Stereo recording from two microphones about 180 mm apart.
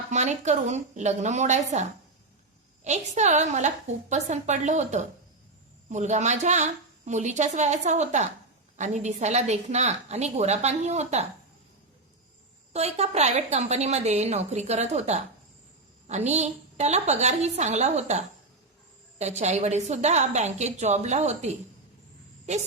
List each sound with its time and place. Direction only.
0.1 s a woman's voice: 40° right (ahead or behind)
3.2 s a woman's voice: 40° right (ahead or behind)
12.7 s a woman's voice: 35° right (ahead or behind)